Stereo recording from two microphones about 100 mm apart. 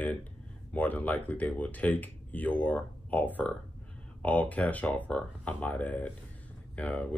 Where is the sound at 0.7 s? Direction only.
15° left (ahead or behind).